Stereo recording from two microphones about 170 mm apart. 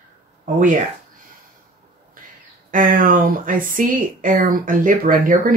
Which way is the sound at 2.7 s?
55° right (ahead or behind).